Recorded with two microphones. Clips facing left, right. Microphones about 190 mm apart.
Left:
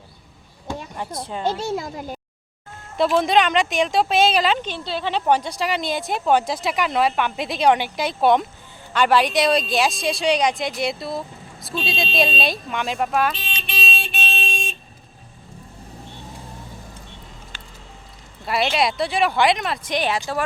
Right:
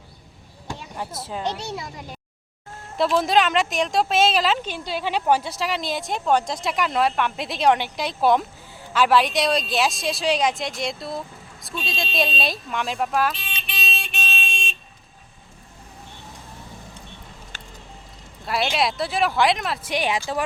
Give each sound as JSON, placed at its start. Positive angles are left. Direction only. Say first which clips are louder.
{"t": 0.9, "sound": "speech", "louder": "right 2 dB", "side_deg": -5}
{"t": 1.6, "sound": "speech", "louder": "left 6 dB", "side_deg": 45}
{"t": 3.0, "sound": "speech", "louder": "left 2 dB", "side_deg": 0}
{"t": 11.7, "sound": "speech", "louder": "left 4 dB", "side_deg": 30}
{"t": 12.1, "sound": "speech", "louder": "left 2 dB", "side_deg": 0}
{"t": 13.7, "sound": "vehicle", "louder": "left 4 dB", "side_deg": 30}
{"t": 18.4, "sound": "speech", "louder": "left 2 dB", "side_deg": 0}